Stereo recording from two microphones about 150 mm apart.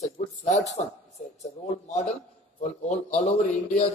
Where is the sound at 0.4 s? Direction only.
50° left (ahead or behind).